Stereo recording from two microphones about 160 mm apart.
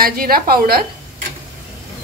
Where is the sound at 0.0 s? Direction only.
65° right (ahead or behind).